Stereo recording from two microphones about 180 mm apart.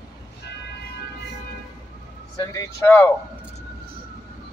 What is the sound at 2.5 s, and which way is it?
Speech, 15° left (ahead or behind).